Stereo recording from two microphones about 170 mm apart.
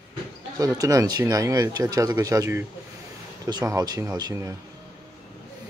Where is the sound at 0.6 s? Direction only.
20° right (ahead or behind).